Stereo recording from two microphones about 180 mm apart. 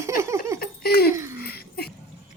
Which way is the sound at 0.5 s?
60° left (ahead or behind).